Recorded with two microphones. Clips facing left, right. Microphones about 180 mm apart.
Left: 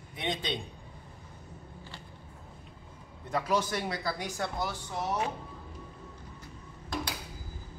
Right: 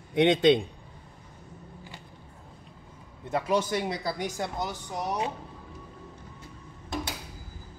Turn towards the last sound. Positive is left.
turn(degrees=-25)  # may be behind; listen again after turning